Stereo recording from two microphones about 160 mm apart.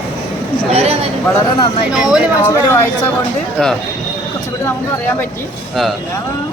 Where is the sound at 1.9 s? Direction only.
5° right (ahead or behind).